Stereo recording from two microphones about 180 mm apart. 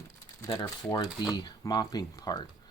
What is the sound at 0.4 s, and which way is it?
Speech, 20° left (ahead or behind).